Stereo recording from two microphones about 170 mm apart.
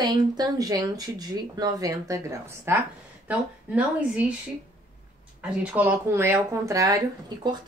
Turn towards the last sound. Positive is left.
turn(degrees=-25)  # may be behind; listen again after turning